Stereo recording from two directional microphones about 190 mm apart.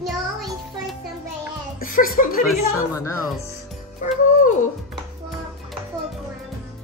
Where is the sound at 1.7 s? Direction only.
45° left (ahead or behind).